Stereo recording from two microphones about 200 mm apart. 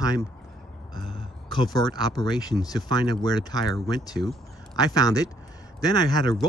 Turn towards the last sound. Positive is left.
turn(degrees=20)  # may be behind; listen again after turning